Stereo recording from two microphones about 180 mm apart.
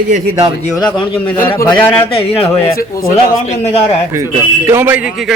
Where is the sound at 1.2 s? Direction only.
10° left (ahead or behind).